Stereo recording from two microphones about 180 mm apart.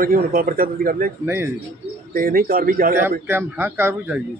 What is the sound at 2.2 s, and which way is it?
Speech, 55° right (ahead or behind).